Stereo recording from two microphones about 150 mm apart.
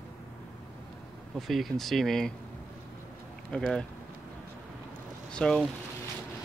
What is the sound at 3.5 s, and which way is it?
Speech, centre (ahead or behind).